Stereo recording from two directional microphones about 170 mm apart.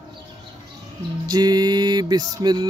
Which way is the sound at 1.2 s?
25° right (ahead or behind).